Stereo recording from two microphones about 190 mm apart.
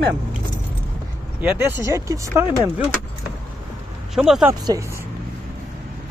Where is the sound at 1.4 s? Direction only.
15° right (ahead or behind).